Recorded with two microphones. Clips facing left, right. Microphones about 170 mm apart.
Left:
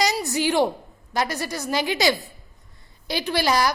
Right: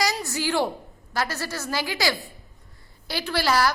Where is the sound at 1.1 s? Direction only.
20° left (ahead or behind).